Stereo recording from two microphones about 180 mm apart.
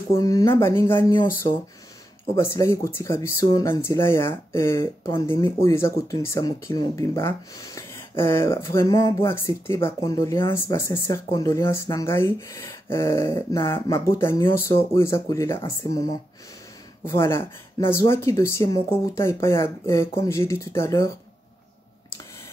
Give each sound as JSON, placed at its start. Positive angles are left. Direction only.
{"t": 0.1, "sound": "speech", "side_deg": 20}